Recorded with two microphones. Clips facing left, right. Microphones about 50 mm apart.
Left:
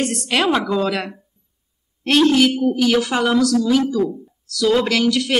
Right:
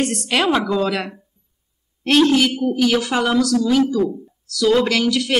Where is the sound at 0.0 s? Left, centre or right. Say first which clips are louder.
Even; centre.